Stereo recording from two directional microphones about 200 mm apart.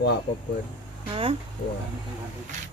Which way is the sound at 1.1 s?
25° right (ahead or behind).